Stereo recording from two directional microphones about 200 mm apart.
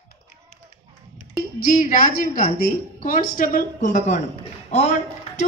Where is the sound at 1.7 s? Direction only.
40° left (ahead or behind).